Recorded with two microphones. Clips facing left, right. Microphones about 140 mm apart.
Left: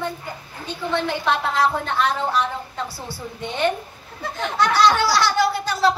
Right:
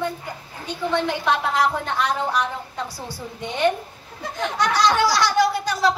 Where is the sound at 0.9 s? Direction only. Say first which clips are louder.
Even; 15° right (ahead or behind).